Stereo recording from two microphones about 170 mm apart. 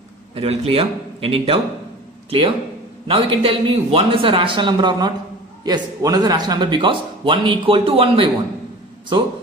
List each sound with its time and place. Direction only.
0.3 s speech: 35° right (ahead or behind)